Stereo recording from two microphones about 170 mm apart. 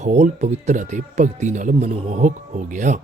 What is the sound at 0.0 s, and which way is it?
Speech, 40° right (ahead or behind).